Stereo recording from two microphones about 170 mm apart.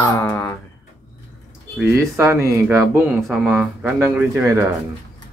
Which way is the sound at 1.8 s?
15° right (ahead or behind).